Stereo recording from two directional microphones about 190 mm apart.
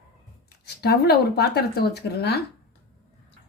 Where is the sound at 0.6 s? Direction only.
55° left (ahead or behind).